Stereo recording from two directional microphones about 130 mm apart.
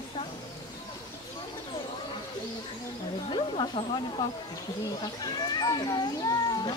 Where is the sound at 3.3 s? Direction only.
40° left (ahead or behind).